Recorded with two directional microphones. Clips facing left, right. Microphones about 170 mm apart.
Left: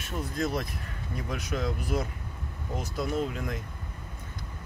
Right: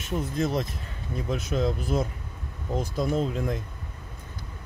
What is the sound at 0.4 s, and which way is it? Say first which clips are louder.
Speech: right 2 dB; 25° right (ahead or behind).